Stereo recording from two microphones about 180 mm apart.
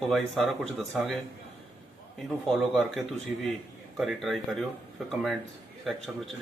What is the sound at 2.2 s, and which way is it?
Speech, centre (ahead or behind).